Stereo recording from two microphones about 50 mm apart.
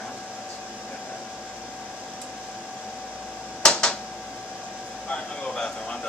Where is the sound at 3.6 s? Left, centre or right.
Centre.